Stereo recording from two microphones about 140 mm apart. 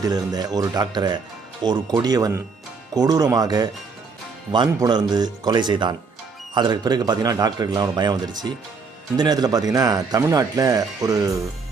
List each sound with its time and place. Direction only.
0.0 s speech: 30° right (ahead or behind)